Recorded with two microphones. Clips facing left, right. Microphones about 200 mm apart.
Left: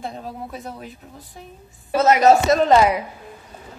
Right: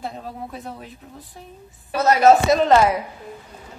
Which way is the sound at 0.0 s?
Centre (ahead or behind).